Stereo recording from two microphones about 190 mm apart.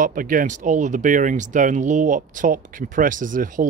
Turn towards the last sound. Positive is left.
turn(degrees=-45)  # may be behind; listen again after turning